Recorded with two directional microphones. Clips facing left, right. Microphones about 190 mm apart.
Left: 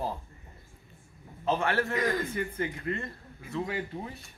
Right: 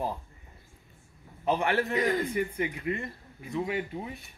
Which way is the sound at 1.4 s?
15° right (ahead or behind).